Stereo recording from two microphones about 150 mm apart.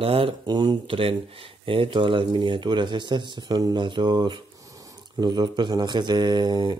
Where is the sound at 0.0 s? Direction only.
35° right (ahead or behind).